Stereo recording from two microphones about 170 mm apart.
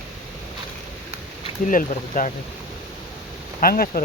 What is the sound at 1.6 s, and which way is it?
Speech, 50° left (ahead or behind).